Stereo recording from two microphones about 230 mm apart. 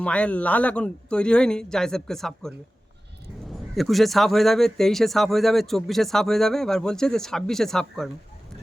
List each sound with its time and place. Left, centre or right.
0.0 s speech: centre
3.8 s speech: centre